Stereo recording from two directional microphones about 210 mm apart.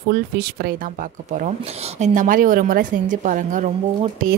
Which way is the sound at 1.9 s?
35° right (ahead or behind).